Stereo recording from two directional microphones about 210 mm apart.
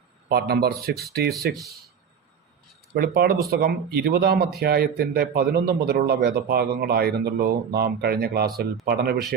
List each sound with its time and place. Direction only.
0.3 s speech: 50° right (ahead or behind)
2.9 s speech: 45° right (ahead or behind)